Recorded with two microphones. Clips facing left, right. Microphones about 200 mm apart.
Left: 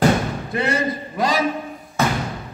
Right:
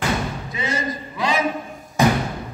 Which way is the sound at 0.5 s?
65° left (ahead or behind).